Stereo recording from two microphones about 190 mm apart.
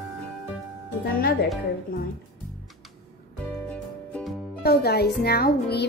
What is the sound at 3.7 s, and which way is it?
Music, 5° left (ahead or behind).